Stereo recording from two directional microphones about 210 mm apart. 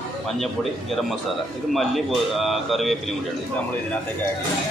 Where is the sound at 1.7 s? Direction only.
Centre (ahead or behind).